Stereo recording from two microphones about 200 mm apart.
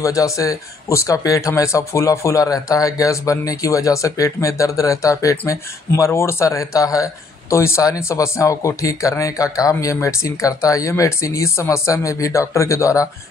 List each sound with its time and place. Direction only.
0.0 s speech: 15° left (ahead or behind)